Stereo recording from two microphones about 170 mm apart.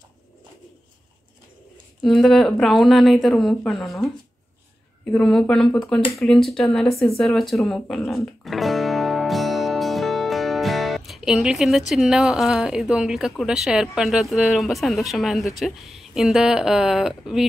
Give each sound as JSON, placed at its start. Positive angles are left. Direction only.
{"t": 2.0, "sound": "speech", "side_deg": 0}
{"t": 5.1, "sound": "speech", "side_deg": 5}